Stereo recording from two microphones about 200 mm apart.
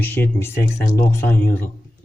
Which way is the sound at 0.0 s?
10° left (ahead or behind).